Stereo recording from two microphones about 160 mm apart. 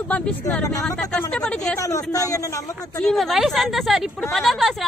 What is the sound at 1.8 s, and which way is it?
Speech, 20° left (ahead or behind).